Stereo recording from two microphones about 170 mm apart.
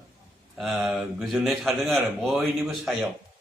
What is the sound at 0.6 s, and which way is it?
A man's voice, centre (ahead or behind).